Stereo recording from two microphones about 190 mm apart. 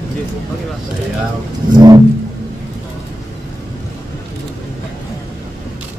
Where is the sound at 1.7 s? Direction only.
20° right (ahead or behind).